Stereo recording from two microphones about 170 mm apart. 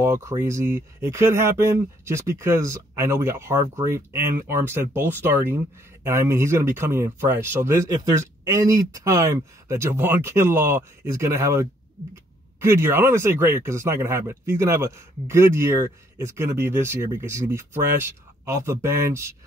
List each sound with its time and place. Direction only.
0.0 s speech: 15° right (ahead or behind)